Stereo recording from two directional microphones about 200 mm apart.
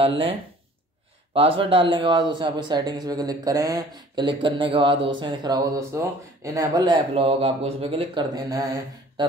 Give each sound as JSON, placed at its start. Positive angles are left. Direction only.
{"t": 0.0, "sound": "speech", "side_deg": -25}